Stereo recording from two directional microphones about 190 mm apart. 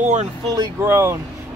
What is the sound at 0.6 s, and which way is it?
Speech, 15° right (ahead or behind).